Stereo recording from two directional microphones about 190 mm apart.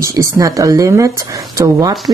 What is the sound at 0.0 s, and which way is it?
Speech, 15° right (ahead or behind).